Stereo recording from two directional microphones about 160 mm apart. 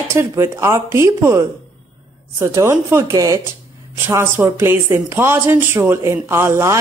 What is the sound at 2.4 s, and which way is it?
A woman's voice, 20° right (ahead or behind).